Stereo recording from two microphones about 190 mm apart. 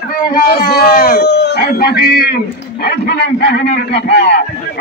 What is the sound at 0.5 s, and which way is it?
A man's voice, 50° left (ahead or behind).